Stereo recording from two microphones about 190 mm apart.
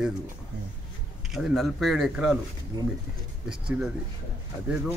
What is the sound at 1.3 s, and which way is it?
Speech, centre (ahead or behind).